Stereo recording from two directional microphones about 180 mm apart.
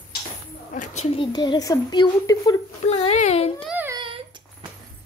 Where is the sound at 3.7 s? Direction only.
10° right (ahead or behind).